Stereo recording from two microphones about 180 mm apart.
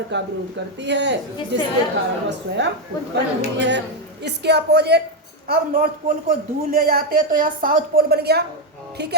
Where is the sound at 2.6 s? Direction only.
75° right (ahead or behind).